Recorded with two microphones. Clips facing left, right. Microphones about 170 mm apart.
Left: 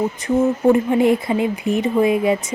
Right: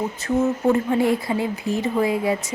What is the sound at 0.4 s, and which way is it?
Speech, 15° left (ahead or behind).